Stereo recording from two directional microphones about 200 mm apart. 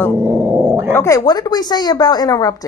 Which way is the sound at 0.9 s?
15° left (ahead or behind).